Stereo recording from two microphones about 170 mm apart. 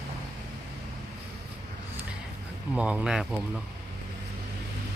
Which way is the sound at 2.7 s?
5° right (ahead or behind).